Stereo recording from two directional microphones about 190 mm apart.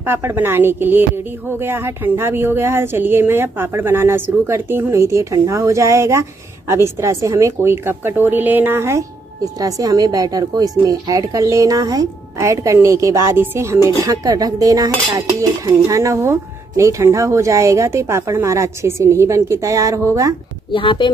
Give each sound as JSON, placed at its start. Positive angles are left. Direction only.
{"t": 0.0, "sound": "speech", "side_deg": -10}
{"t": 20.7, "sound": "speech", "side_deg": 25}